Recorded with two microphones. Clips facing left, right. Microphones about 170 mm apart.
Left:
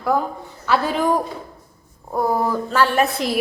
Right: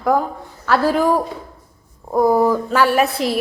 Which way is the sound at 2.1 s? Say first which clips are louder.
Right 6 dB; 10° right (ahead or behind).